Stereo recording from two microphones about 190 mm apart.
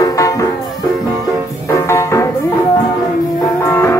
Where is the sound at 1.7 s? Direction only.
15° left (ahead or behind).